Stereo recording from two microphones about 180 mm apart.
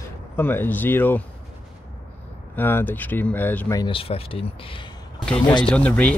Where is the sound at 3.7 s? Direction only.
25° left (ahead or behind).